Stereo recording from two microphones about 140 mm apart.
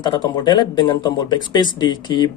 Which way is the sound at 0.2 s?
30° left (ahead or behind).